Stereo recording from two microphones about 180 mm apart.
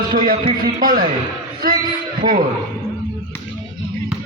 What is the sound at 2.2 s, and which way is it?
Speech, 50° right (ahead or behind).